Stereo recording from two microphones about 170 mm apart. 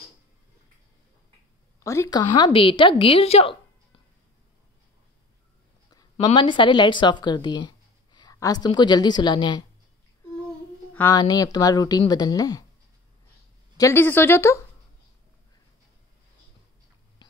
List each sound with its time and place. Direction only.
1.8 s a woman's voice: 20° left (ahead or behind); by 4.0 s 35° left (ahead or behind)
6.2 s speech: 30° left (ahead or behind)
11.0 s speech: 20° left (ahead or behind)
13.7 s speech: 15° left (ahead or behind)